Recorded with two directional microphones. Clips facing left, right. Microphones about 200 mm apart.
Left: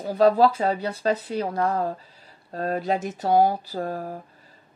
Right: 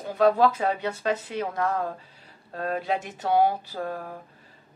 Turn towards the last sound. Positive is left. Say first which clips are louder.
# left 3 dB
turn(degrees=35)  # may be behind; listen again after turning